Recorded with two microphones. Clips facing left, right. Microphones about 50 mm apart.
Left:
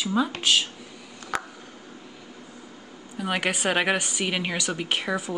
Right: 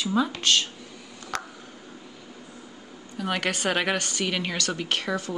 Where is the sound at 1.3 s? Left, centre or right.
Centre.